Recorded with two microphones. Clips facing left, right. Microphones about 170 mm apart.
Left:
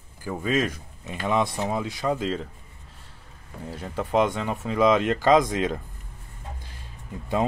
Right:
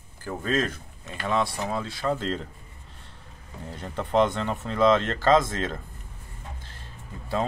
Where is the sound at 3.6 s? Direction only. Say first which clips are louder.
Left 2 dB; 5° left (ahead or behind).